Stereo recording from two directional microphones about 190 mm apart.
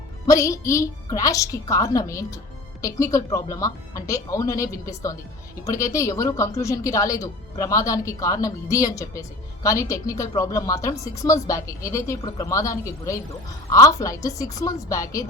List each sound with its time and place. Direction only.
0.3 s speech: 15° left (ahead or behind)